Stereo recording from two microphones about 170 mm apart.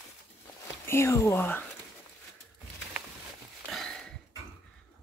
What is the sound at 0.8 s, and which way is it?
Speech, 15° left (ahead or behind).